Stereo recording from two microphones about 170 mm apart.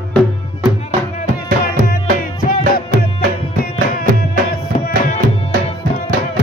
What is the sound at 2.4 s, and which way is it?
Music, 60° left (ahead or behind).